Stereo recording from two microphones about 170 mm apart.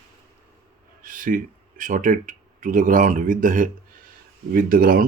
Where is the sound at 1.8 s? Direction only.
50° right (ahead or behind).